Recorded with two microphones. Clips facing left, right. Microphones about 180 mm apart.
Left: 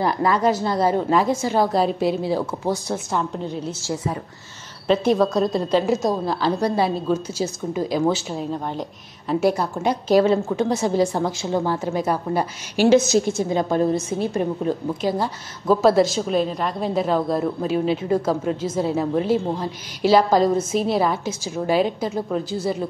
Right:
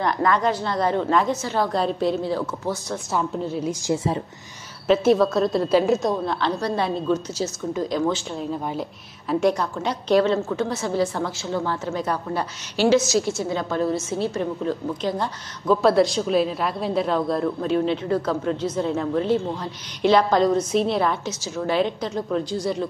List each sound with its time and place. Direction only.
0.0 s a woman's voice: 5° left (ahead or behind)
3.1 s a woman's voice: 5° right (ahead or behind)
3.9 s speech: 25° right (ahead or behind)
4.8 s a woman's voice: 5° right (ahead or behind)